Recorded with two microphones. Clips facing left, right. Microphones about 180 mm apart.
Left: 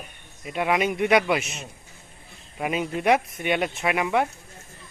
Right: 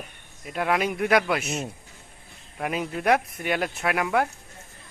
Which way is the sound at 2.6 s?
5° left (ahead or behind).